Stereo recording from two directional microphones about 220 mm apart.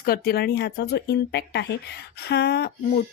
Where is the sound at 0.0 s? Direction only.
45° left (ahead or behind).